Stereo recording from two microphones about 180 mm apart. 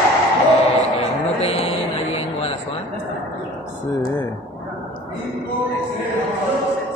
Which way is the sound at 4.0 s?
15° left (ahead or behind).